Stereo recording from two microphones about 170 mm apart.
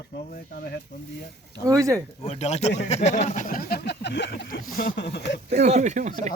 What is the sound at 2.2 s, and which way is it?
Speech, 40° left (ahead or behind).